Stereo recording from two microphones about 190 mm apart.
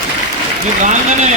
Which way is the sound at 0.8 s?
40° right (ahead or behind).